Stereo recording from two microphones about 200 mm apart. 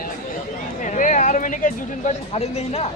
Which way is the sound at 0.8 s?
40° left (ahead or behind).